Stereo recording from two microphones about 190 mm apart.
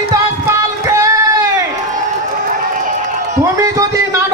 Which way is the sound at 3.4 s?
15° right (ahead or behind).